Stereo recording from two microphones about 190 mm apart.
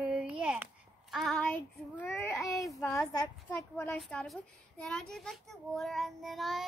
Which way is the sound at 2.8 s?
15° left (ahead or behind).